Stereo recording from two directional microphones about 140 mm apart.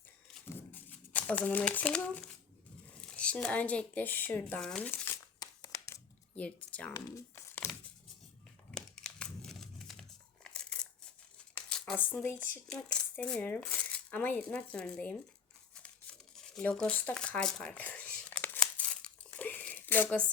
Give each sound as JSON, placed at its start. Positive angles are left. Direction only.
{"t": 0.4, "sound": "a sound", "side_deg": 15}
{"t": 3.0, "sound": "speech", "side_deg": 10}
{"t": 5.4, "sound": "a sound", "side_deg": 25}
{"t": 6.3, "sound": "speech", "side_deg": 10}
{"t": 7.3, "sound": "crumpling", "side_deg": 15}
{"t": 8.7, "sound": "crumpling", "side_deg": 5}
{"t": 11.5, "sound": "speech", "side_deg": 5}
{"t": 15.7, "sound": "crumpling", "side_deg": 5}